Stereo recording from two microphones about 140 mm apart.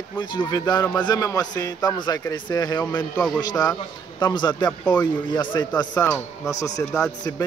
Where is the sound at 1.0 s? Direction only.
25° left (ahead or behind).